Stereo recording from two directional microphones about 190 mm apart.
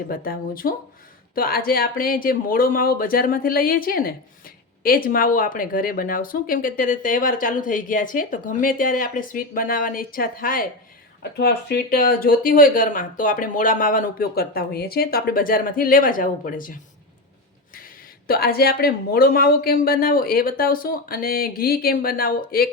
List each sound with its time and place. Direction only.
0.1 s speech: 50° left (ahead or behind)
17.7 s speech: 50° left (ahead or behind)